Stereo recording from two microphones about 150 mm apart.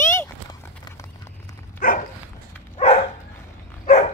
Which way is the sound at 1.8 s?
70° left (ahead or behind).